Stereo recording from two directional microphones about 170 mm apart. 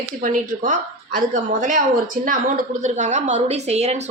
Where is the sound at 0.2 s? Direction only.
50° right (ahead or behind).